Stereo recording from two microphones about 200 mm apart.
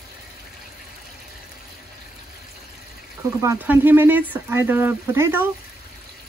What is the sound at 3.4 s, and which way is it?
Speech, 10° right (ahead or behind).